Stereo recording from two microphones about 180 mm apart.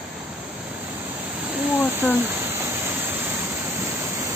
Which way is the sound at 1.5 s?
10° right (ahead or behind).